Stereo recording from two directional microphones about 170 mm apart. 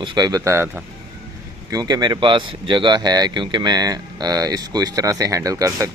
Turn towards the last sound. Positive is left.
turn(degrees=-20)  # may be behind; listen again after turning